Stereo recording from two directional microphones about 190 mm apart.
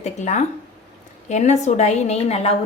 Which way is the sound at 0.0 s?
40° left (ahead or behind).